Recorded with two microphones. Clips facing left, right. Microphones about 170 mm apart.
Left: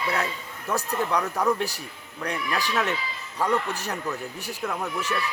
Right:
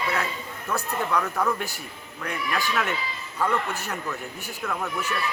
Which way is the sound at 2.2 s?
35° left (ahead or behind).